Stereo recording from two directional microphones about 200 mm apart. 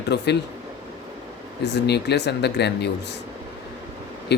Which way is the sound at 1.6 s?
55° left (ahead or behind).